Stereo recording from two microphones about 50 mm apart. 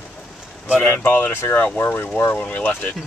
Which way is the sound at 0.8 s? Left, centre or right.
Left.